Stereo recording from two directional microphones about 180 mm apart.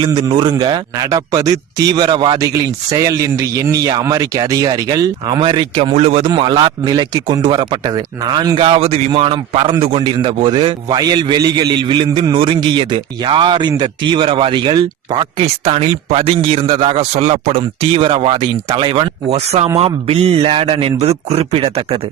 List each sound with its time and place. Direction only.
0.0 s a man's voice: 25° right (ahead or behind)